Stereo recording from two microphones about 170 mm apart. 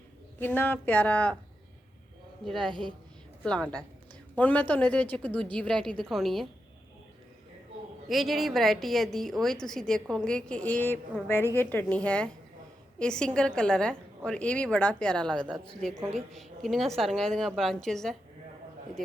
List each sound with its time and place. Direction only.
0.3 s a woman's voice: 10° left (ahead or behind)
2.4 s a woman's voice: centre (ahead or behind)
4.4 s a woman's voice: 10° left (ahead or behind)
8.0 s a woman's voice: centre (ahead or behind)